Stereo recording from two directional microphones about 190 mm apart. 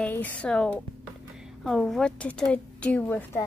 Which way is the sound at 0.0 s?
5° left (ahead or behind).